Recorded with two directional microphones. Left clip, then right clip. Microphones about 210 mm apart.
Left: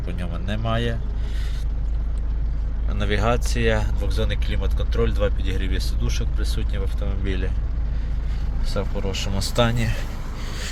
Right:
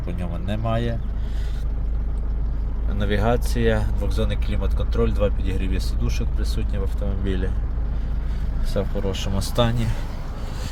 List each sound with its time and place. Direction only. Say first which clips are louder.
0.0 s speech: right 1 dB; 10° right (ahead or behind)
2.9 s speech: even; 5° right (ahead or behind)
8.7 s speech: right 2 dB; 20° right (ahead or behind)